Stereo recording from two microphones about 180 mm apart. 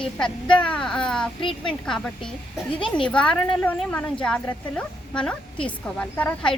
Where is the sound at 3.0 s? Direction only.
5° left (ahead or behind).